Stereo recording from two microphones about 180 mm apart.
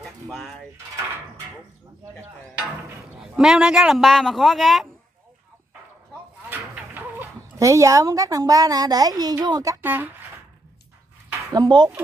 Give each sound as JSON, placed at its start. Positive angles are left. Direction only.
{"t": 0.0, "sound": "a sound", "side_deg": 0}
{"t": 3.2, "sound": "a man's voice", "side_deg": -5}
{"t": 6.5, "sound": "speech", "side_deg": -10}
{"t": 11.5, "sound": "speech", "side_deg": -25}